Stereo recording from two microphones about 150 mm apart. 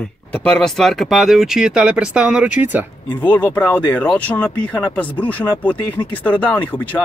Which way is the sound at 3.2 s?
10° left (ahead or behind).